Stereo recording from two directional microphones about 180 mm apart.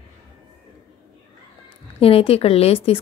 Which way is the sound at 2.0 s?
30° left (ahead or behind).